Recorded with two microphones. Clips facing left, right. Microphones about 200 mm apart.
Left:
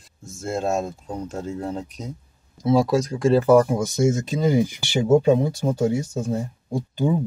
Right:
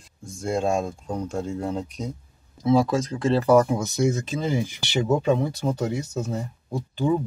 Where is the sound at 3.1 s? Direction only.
30° left (ahead or behind).